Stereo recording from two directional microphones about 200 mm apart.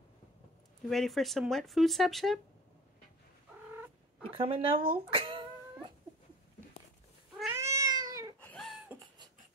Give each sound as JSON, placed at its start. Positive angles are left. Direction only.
{"t": 0.8, "sound": "speech", "side_deg": 0}
{"t": 4.3, "sound": "speech", "side_deg": -30}
{"t": 5.1, "sound": "cat", "side_deg": -25}
{"t": 7.5, "sound": "cat", "side_deg": -15}
{"t": 8.4, "sound": "a sound", "side_deg": 5}